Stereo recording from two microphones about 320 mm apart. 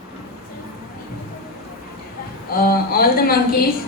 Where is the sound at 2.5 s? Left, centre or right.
Left.